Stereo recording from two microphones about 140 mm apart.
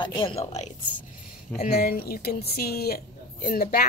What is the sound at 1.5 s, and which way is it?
A woman's voice, 90° left.